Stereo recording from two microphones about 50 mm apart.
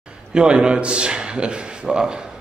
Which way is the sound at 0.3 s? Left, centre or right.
Centre.